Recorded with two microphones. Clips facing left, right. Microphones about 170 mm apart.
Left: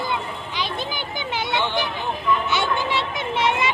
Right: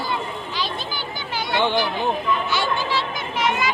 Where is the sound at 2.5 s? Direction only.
20° left (ahead or behind).